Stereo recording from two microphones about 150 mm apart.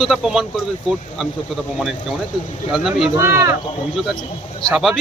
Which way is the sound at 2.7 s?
Centre (ahead or behind).